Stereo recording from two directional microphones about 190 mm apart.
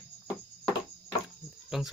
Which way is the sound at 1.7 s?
Centre (ahead or behind).